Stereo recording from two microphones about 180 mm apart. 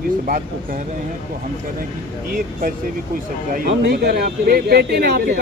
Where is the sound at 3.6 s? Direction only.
60° right (ahead or behind).